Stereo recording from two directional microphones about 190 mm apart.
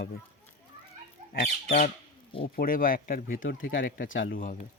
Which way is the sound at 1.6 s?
40° left (ahead or behind).